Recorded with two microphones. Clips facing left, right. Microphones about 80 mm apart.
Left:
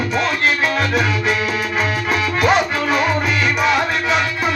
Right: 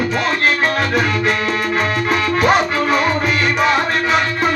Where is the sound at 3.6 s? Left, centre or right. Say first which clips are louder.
Right 1 dB; right.